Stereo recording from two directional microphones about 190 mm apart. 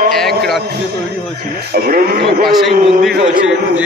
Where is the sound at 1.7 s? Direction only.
50° right (ahead or behind).